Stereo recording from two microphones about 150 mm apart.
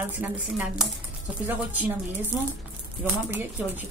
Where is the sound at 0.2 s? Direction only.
10° right (ahead or behind).